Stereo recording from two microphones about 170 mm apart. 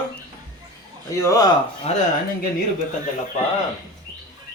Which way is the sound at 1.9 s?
40° left (ahead or behind).